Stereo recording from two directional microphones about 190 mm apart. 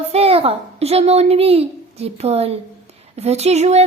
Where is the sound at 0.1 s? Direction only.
30° right (ahead or behind).